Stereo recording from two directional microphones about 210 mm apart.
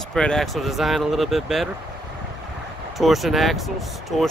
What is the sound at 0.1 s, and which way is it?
Speech, 5° left (ahead or behind).